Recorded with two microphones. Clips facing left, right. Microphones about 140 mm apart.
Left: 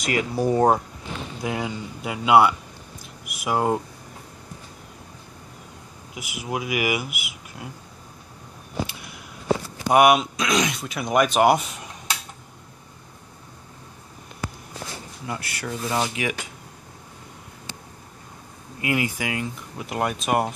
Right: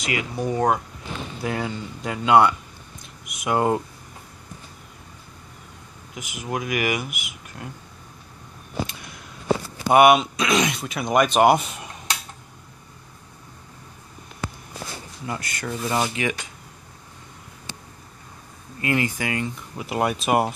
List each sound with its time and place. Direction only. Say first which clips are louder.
0.0 s speech: left 3 dB; 40° left (ahead or behind)
1.4 s speech: right 1 dB; 15° left (ahead or behind)
6.1 s speech: even; 10° left (ahead or behind)
8.8 s a sound: even; 5° left (ahead or behind)
9.8 s speech: right 2 dB; centre (ahead or behind)
15.2 s speech: right 1 dB; 5° left (ahead or behind)
18.8 s speech: right 1 dB; 10° left (ahead or behind); by 20.5 s 5° right (ahead or behind)